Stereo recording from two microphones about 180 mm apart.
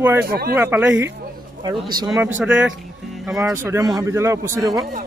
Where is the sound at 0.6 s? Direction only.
10° right (ahead or behind).